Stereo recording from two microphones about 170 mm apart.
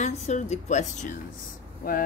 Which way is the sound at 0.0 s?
45° left (ahead or behind).